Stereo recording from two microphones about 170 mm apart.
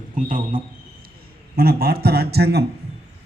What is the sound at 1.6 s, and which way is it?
A man's voice, 65° right (ahead or behind).